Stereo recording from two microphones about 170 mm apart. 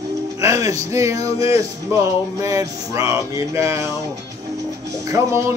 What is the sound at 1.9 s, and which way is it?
Music, 15° right (ahead or behind).